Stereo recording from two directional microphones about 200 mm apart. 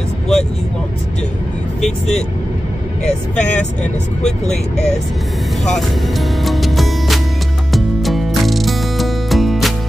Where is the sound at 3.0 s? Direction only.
5° left (ahead or behind).